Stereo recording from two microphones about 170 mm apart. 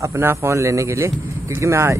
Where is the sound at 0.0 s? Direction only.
15° right (ahead or behind).